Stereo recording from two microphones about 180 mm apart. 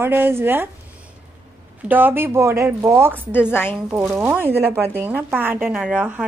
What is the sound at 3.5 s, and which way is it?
Speech, 10° left (ahead or behind).